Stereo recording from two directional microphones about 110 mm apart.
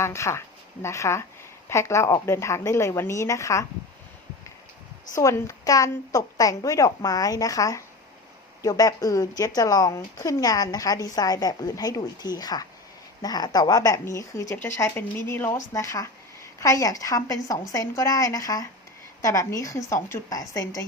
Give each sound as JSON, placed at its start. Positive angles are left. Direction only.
{"t": 0.0, "sound": "speech", "side_deg": 25}
{"t": 5.2, "sound": "speech", "side_deg": 30}